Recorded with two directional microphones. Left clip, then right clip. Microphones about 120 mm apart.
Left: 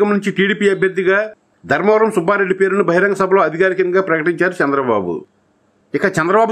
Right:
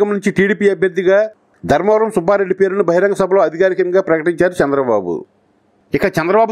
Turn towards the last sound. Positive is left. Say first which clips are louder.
# right 1 dB
turn(degrees=-35)  # may be behind; listen again after turning